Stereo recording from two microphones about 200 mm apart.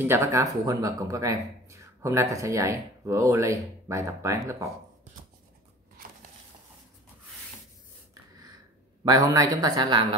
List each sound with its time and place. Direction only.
0.0 s speech: 10° right (ahead or behind)
9.0 s speech: 20° right (ahead or behind)